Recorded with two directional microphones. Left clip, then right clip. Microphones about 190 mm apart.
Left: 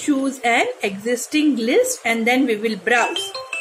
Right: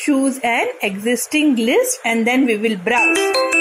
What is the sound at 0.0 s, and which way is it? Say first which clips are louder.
A woman's voice: right 3 dB; 25° right (ahead or behind).